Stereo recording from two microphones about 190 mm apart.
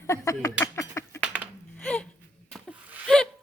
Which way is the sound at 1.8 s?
5° left (ahead or behind).